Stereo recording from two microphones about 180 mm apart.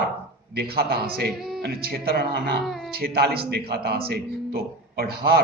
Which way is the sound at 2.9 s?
60° right (ahead or behind).